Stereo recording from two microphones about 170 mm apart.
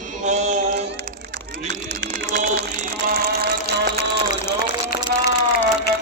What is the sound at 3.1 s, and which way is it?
Music, 65° right (ahead or behind).